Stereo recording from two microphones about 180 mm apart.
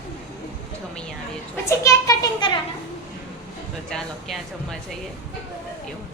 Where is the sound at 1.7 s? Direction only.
20° left (ahead or behind).